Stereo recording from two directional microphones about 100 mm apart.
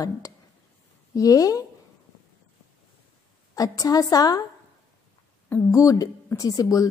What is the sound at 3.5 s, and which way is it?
Speech, 35° left (ahead or behind).